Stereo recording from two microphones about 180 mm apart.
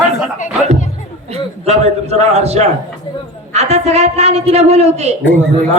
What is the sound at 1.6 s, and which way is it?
A woman's voice, 35° right (ahead or behind).